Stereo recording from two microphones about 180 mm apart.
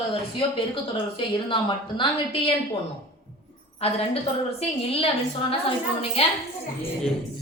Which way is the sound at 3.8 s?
35° left (ahead or behind).